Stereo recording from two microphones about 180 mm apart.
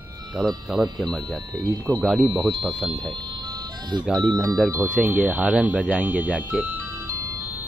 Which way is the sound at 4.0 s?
Centre (ahead or behind).